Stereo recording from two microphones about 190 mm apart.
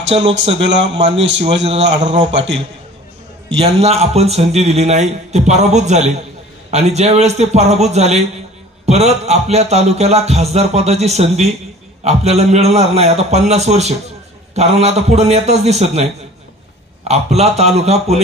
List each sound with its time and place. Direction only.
0.3 s speech: 70° right (ahead or behind)
3.5 s speech: 35° right (ahead or behind)
17.1 s speech: 35° right (ahead or behind)